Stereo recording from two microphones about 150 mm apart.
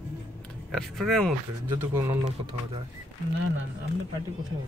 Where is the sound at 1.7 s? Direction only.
15° right (ahead or behind).